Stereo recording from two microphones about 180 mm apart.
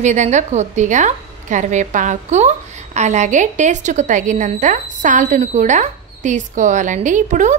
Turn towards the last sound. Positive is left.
turn(degrees=-45)  # may be behind; listen again after turning